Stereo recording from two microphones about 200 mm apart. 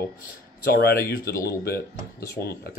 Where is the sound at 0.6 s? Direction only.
50° left (ahead or behind).